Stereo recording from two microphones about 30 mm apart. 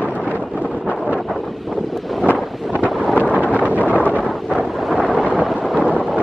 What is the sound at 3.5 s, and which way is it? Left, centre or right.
Wind noise, right.